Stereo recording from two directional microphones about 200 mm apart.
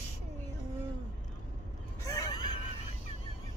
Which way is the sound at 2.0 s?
20° left (ahead or behind).